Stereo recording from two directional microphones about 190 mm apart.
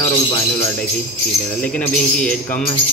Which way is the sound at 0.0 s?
25° left (ahead or behind).